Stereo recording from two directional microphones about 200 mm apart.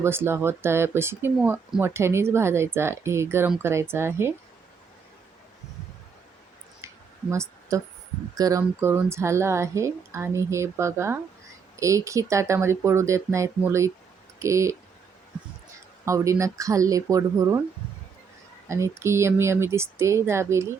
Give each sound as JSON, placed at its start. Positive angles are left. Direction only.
{"t": 0.0, "sound": "speech", "side_deg": -10}
{"t": 6.8, "sound": "a sound", "side_deg": -15}
{"t": 8.4, "sound": "speech", "side_deg": -15}
{"t": 16.0, "sound": "speech", "side_deg": -15}
{"t": 18.7, "sound": "speech", "side_deg": -15}